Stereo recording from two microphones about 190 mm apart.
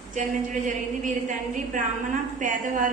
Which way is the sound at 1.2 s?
40° right (ahead or behind).